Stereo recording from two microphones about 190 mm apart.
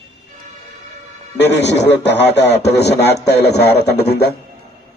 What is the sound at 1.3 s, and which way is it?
A man's voice, 65° left (ahead or behind).